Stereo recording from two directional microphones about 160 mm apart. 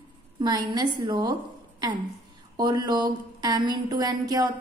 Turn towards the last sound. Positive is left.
turn(degrees=-25)  # may be behind; listen again after turning